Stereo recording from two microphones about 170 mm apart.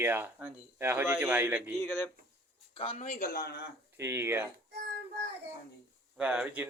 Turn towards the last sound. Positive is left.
turn(degrees=-10)  # may be behind; listen again after turning